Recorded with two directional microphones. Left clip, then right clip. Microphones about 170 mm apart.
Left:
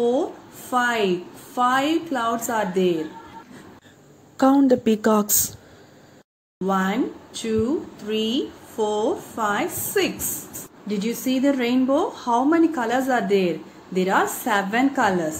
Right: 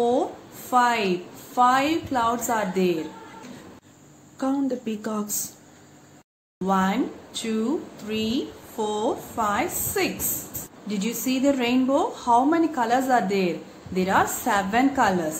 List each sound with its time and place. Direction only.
0.0 s a sound: 10° left (ahead or behind)
1.5 s a woman's voice: 10° left (ahead or behind)
4.4 s speech: 50° left (ahead or behind)
6.6 s a woman's voice: 15° left (ahead or behind)